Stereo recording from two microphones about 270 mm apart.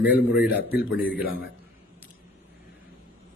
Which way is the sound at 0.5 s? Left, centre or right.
Left.